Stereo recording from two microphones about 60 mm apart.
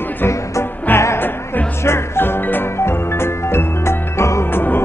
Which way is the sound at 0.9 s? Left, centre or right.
Left.